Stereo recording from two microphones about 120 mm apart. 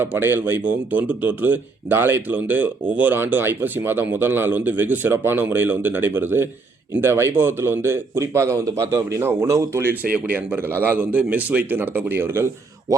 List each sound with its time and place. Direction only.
0.0 s speech: 20° right (ahead or behind)